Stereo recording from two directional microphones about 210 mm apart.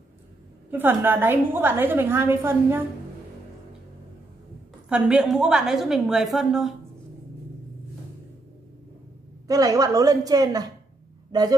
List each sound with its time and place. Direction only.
0.7 s a woman's voice: 10° right (ahead or behind)
4.8 s a woman's voice: 5° right (ahead or behind)
9.5 s a woman's voice: 15° right (ahead or behind)